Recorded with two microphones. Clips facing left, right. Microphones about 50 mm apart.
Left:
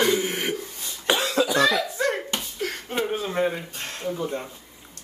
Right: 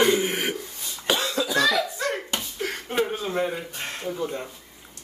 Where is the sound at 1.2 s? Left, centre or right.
Left.